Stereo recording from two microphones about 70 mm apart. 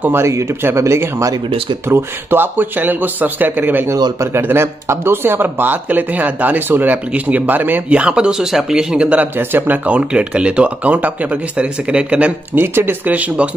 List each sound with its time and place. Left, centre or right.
0.0 s speech: right; by 9.2 s centre
9.2 s speech: right
9.8 s speech: centre
12.5 s speech: right